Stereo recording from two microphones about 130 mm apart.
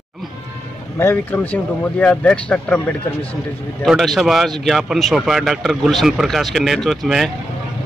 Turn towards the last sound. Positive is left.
turn(degrees=0)  # may be behind; listen again after turning